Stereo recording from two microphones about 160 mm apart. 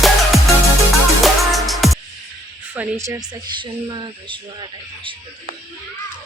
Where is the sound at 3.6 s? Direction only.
30° right (ahead or behind).